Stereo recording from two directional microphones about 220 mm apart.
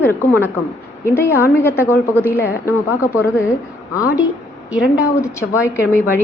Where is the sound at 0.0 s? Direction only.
10° left (ahead or behind).